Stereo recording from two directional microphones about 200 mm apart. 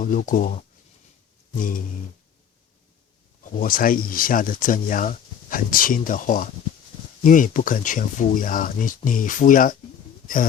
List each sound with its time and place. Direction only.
0.0 s speech: 40° left (ahead or behind)
3.4 s speech: 45° left (ahead or behind)